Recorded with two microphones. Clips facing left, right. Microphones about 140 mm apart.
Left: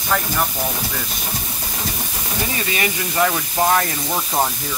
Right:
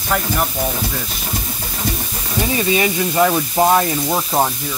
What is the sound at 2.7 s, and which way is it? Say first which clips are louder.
Speech: right 5 dB; 20° right (ahead or behind).